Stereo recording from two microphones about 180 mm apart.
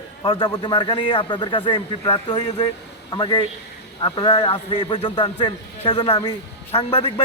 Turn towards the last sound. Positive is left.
turn(degrees=30)  # may be behind; listen again after turning